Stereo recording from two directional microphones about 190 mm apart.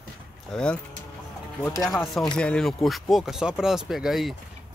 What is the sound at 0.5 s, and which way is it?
Speech, 5° left (ahead or behind).